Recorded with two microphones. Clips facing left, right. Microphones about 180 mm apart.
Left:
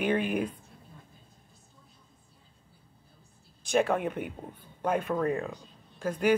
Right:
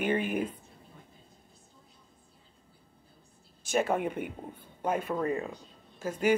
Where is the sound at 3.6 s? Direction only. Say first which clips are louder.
Left 2 dB; 5° right (ahead or behind).